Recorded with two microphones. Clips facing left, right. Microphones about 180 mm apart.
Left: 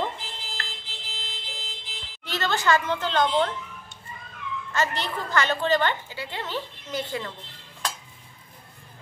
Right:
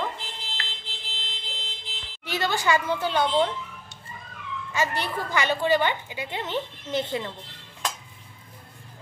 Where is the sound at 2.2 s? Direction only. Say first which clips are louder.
Even; 10° right (ahead or behind).